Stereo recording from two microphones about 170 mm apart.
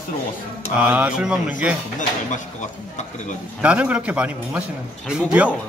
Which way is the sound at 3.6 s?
10° right (ahead or behind).